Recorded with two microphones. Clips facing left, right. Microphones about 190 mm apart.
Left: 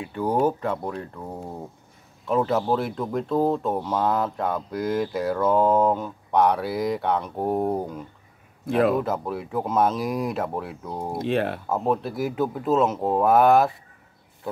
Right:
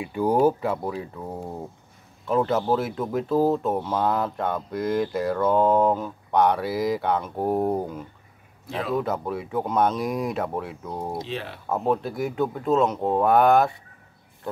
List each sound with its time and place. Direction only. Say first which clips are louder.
0.0 s speech: right 2 dB; 10° right (ahead or behind)
8.6 s speech: left 10 dB; 55° left (ahead or behind)
8.9 s speech: even; centre (ahead or behind)
11.1 s speech: left 8 dB; 55° left (ahead or behind)
11.7 s speech: right 2 dB; centre (ahead or behind)